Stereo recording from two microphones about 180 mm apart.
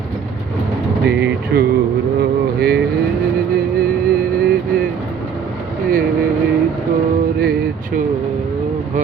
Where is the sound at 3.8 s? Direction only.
55° right (ahead or behind).